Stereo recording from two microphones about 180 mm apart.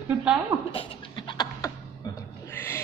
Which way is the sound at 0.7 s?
30° left (ahead or behind).